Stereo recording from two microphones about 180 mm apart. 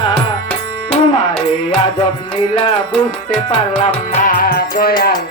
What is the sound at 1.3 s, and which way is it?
Music, 30° left (ahead or behind).